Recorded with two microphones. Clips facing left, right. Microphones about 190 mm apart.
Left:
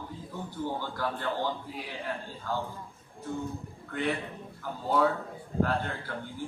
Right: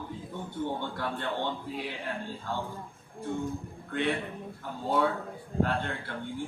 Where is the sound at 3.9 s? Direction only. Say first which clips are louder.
Right 1 dB; 25° right (ahead or behind).